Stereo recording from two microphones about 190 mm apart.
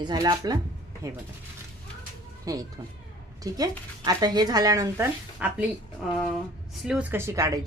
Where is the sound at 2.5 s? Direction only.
20° right (ahead or behind).